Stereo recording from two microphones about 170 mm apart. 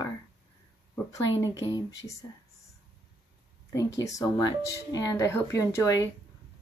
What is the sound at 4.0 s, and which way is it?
A woman's voice, 20° left (ahead or behind).